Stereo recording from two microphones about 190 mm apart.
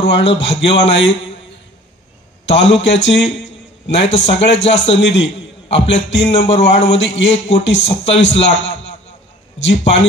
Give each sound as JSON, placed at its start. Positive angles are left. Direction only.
{"t": 0.0, "sound": "speech", "side_deg": 65}
{"t": 2.4, "sound": "a man's voice", "side_deg": 70}